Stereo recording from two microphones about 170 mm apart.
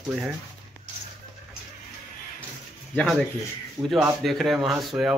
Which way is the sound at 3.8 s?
15° right (ahead or behind).